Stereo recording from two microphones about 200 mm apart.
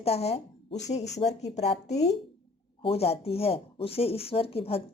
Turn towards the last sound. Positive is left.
turn(degrees=30)  # may be behind; listen again after turning